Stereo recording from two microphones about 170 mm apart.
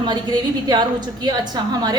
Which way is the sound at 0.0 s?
25° right (ahead or behind).